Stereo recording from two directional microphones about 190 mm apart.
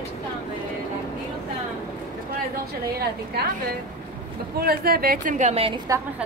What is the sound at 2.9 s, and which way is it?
Speech, 55° right (ahead or behind).